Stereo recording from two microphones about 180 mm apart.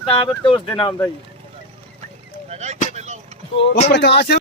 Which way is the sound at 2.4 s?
40° right (ahead or behind).